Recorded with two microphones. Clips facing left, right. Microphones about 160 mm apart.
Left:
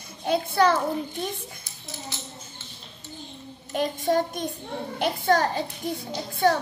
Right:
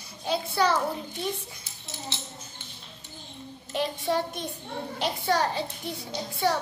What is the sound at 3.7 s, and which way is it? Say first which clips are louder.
A child's voice: left 4 dB; 45° left (ahead or behind).